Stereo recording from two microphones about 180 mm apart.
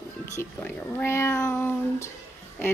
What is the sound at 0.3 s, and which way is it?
A woman's voice, 15° left (ahead or behind).